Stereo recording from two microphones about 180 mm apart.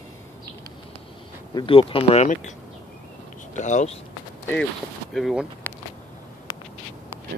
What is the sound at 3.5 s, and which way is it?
Speech, 40° left (ahead or behind).